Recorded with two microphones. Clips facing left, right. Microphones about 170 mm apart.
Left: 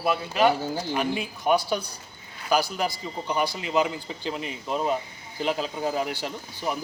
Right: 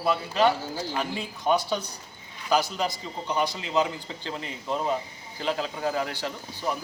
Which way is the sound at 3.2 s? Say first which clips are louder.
Even; 15° left (ahead or behind).